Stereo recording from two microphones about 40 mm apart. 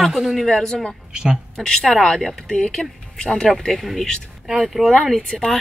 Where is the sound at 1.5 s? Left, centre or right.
Centre.